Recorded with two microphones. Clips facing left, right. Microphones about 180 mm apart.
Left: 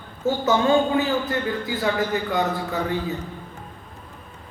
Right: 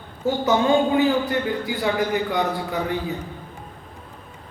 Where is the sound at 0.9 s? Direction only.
20° right (ahead or behind).